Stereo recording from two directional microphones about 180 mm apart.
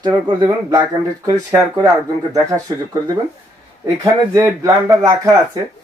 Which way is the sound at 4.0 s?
15° right (ahead or behind).